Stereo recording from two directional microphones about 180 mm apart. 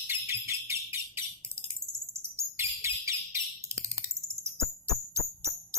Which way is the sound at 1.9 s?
5° left (ahead or behind).